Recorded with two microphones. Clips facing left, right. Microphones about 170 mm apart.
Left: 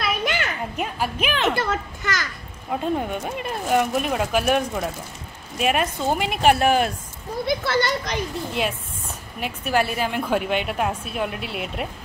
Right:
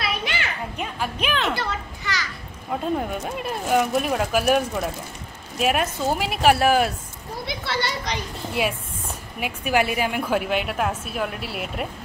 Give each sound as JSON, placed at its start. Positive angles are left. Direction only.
{"t": 0.0, "sound": "children playing", "side_deg": 45}
{"t": 0.7, "sound": "speech", "side_deg": 5}
{"t": 1.5, "sound": "a child's voice", "side_deg": 50}
{"t": 2.7, "sound": "speech", "side_deg": 0}
{"t": 7.4, "sound": "speech", "side_deg": 45}
{"t": 8.6, "sound": "a woman's voice", "side_deg": -5}